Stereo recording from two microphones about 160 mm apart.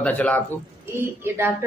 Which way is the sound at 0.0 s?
10° left (ahead or behind).